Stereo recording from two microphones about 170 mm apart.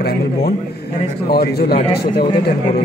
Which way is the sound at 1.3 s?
65° left (ahead or behind).